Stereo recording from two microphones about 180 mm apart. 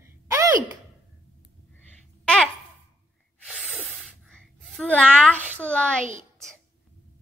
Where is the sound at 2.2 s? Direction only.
5° left (ahead or behind).